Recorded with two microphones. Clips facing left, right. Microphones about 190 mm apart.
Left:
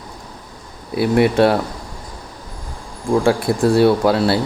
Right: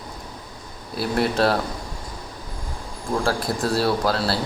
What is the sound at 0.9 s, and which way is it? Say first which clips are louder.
Speech: left 8 dB; 65° left (ahead or behind).